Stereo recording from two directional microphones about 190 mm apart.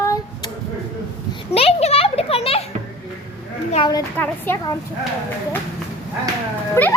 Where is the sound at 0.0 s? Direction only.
20° left (ahead or behind).